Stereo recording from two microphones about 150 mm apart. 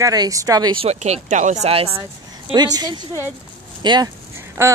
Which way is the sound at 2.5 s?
25° right (ahead or behind).